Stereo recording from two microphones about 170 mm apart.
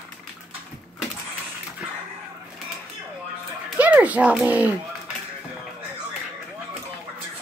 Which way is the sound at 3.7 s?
10° right (ahead or behind).